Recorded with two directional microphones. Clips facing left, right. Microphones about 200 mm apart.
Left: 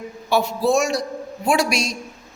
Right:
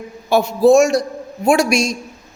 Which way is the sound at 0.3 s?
45° right (ahead or behind).